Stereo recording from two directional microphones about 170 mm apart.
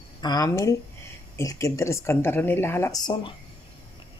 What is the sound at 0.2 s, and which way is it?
A woman's voice, 20° left (ahead or behind).